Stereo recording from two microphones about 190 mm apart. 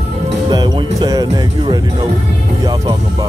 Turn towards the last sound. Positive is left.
turn(degrees=-15)  # may be behind; listen again after turning